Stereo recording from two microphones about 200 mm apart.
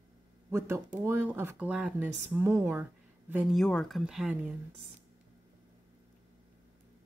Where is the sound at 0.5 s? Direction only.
15° right (ahead or behind).